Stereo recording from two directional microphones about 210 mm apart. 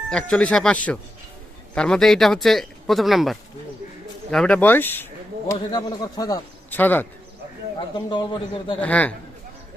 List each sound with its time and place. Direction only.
0.1 s speech: 5° left (ahead or behind)
7.9 s a man's voice: 20° left (ahead or behind)
8.8 s speech: 5° left (ahead or behind)